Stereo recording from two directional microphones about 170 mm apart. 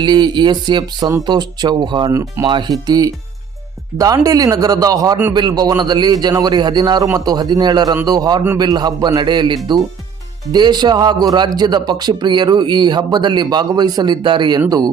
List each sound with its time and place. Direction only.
0.0 s speech: 25° right (ahead or behind)